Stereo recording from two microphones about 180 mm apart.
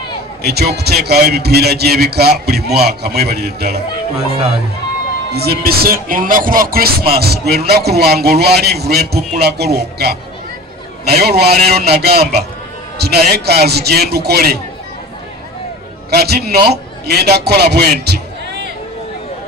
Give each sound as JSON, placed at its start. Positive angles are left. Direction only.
{"t": 0.4, "sound": "a man's voice", "side_deg": -60}
{"t": 5.3, "sound": "a man's voice", "side_deg": -60}
{"t": 16.1, "sound": "a man's voice", "side_deg": -60}